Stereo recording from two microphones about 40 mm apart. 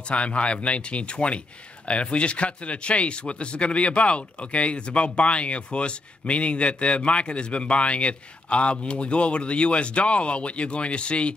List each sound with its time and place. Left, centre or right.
0.1 s speech: left